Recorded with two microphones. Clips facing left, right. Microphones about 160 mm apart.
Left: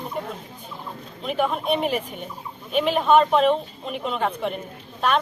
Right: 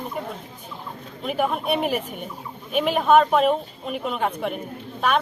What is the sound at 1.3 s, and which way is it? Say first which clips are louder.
Speech: even; 5° right (ahead or behind).